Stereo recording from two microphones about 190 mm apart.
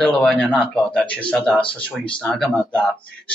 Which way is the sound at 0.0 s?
5° left (ahead or behind).